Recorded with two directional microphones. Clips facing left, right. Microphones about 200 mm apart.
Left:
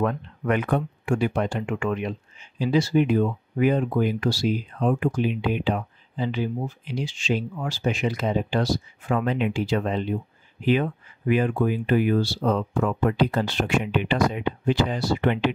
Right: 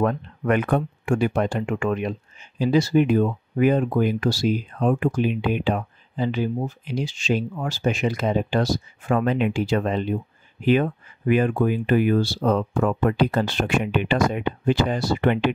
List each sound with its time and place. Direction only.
0.0 s speech: 45° right (ahead or behind)